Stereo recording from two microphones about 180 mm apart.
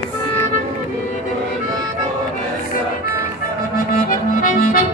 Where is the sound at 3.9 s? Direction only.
50° left (ahead or behind).